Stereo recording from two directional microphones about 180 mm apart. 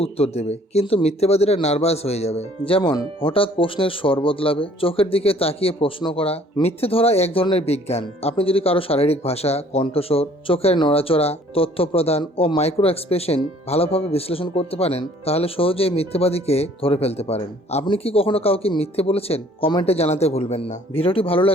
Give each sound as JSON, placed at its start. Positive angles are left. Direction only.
{"t": 0.0, "sound": "speech", "side_deg": 35}
{"t": 2.9, "sound": "speech", "side_deg": 20}
{"t": 3.3, "sound": "speech", "side_deg": 30}